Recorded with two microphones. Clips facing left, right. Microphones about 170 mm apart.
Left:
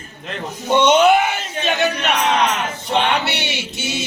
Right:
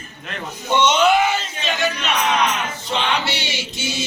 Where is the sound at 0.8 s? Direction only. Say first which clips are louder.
Left 3 dB; 55° left (ahead or behind).